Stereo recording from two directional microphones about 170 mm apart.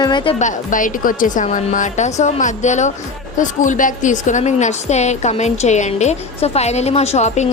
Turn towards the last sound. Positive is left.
turn(degrees=40)  # may be behind; listen again after turning